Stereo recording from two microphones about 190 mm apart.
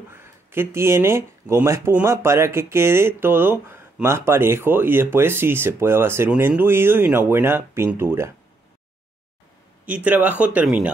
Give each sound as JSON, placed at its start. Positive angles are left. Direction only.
{"t": 0.1, "sound": "speech", "side_deg": -10}
{"t": 9.8, "sound": "speech", "side_deg": -10}